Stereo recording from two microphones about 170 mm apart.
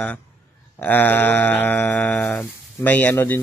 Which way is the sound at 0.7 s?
10° left (ahead or behind).